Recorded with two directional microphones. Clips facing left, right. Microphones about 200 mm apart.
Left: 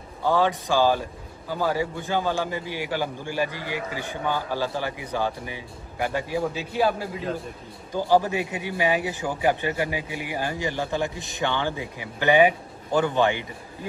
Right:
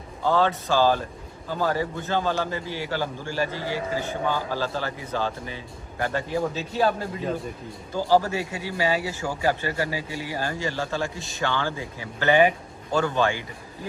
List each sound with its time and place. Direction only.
0.2 s a man's voice: 15° left (ahead or behind)